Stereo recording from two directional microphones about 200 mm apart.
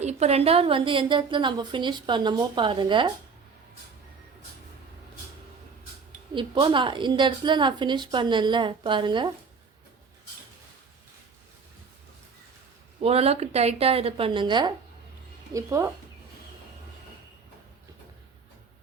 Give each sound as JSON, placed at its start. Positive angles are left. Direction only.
{"t": 0.0, "sound": "a woman's voice", "side_deg": -30}
{"t": 6.3, "sound": "a woman's voice", "side_deg": -25}
{"t": 13.0, "sound": "a woman's voice", "side_deg": -30}